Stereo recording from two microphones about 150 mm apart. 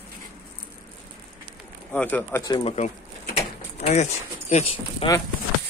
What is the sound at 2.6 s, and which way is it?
Speech, 45° left (ahead or behind).